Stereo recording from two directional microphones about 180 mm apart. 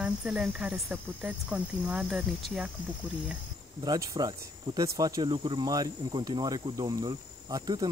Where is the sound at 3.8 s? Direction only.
20° right (ahead or behind).